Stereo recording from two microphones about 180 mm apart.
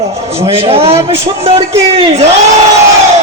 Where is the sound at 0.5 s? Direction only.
35° right (ahead or behind).